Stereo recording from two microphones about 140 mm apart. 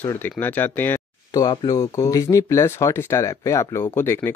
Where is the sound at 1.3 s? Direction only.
25° left (ahead or behind).